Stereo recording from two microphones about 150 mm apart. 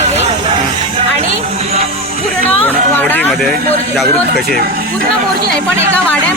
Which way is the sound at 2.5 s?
10° left (ahead or behind).